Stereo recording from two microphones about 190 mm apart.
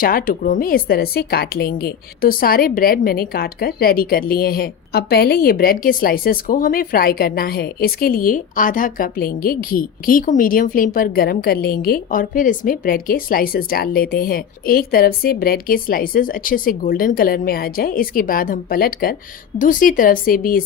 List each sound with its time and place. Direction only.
0.0 s speech: 50° left (ahead or behind)